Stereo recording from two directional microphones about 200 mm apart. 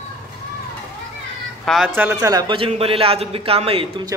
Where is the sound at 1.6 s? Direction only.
Centre (ahead or behind).